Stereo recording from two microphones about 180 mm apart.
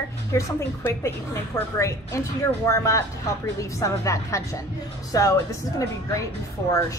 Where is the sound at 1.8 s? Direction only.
15° left (ahead or behind).